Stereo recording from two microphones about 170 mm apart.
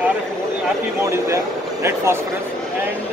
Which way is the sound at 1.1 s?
15° right (ahead or behind).